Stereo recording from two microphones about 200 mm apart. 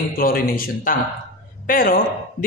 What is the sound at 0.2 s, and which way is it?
A woman's voice, 45° left (ahead or behind).